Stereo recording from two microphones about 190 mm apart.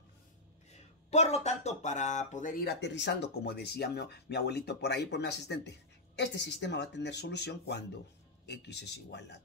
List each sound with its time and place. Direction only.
0.7 s speech: 35° left (ahead or behind); by 9.4 s 60° left (ahead or behind)